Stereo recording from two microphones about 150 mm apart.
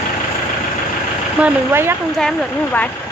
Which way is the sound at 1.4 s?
15° right (ahead or behind).